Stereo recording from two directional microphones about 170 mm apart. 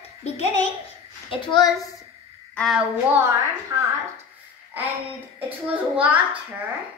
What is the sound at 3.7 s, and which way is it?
Speech, 20° right (ahead or behind).